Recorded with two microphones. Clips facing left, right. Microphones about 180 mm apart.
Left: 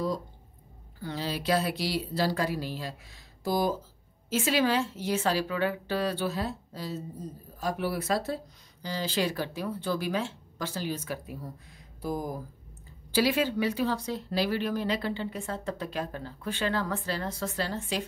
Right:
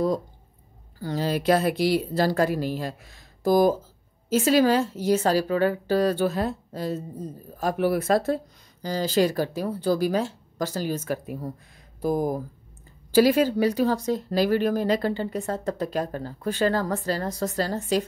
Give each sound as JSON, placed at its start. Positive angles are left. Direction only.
{"t": 0.9, "sound": "speech", "side_deg": -40}